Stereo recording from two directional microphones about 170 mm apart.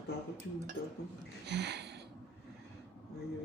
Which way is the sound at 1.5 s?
90° right.